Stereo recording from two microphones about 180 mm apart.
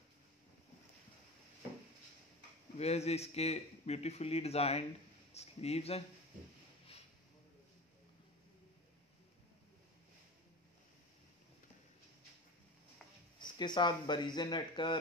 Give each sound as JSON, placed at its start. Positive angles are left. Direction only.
{"t": 2.8, "sound": "a man's voice", "side_deg": 35}
{"t": 13.4, "sound": "speech", "side_deg": 25}